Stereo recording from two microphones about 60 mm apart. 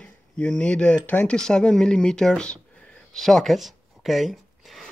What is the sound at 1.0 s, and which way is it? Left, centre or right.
Speech, left.